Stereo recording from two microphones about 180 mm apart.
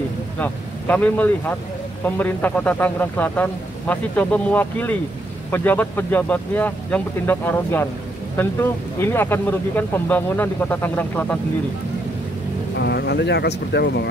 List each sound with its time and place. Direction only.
0.4 s a man's voice: 10° left (ahead or behind)
12.7 s speech: 70° left (ahead or behind)